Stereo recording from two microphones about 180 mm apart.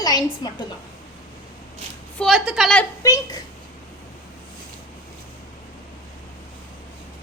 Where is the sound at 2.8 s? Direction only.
20° left (ahead or behind).